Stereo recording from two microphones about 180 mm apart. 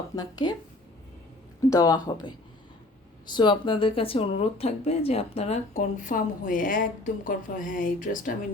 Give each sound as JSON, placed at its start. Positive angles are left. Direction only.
{"t": 0.2, "sound": "speech", "side_deg": 25}
{"t": 1.7, "sound": "speech", "side_deg": 20}